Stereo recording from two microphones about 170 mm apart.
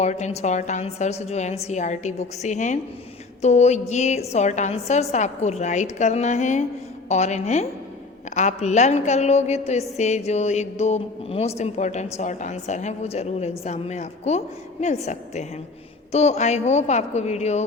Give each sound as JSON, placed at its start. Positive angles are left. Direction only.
{"t": 0.0, "sound": "a woman's voice", "side_deg": 40}